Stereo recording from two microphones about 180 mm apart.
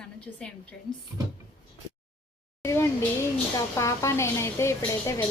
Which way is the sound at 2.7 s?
15° left (ahead or behind).